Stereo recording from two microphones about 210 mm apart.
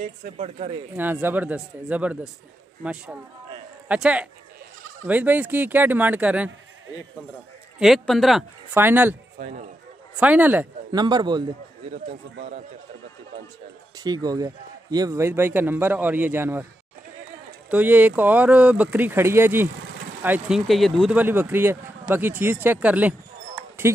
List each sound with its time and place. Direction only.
0.0 s speech: 35° right (ahead or behind)
0.9 s speech: 10° right (ahead or behind)
7.8 s speech: centre (ahead or behind)
9.4 s speech: 35° right (ahead or behind)
10.1 s speech: 5° right (ahead or behind)
10.9 s a man's voice: 20° right (ahead or behind)
11.9 s speech: 35° right (ahead or behind)
13.9 s speech: 20° right (ahead or behind)
17.6 s speech: 10° right (ahead or behind)